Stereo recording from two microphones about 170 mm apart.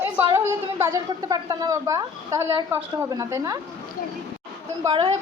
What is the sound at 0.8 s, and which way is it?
A woman's voice, 20° right (ahead or behind).